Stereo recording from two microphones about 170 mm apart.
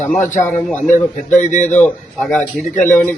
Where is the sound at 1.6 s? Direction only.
10° left (ahead or behind).